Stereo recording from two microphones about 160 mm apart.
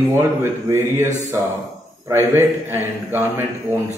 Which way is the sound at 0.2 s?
15° right (ahead or behind).